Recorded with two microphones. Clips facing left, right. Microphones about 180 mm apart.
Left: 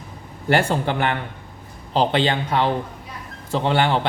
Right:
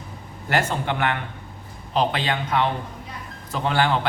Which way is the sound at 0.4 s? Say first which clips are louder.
Left 4 dB; 30° left (ahead or behind).